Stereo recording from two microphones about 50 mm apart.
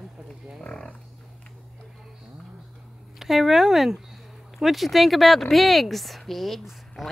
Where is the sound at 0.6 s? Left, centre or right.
Centre.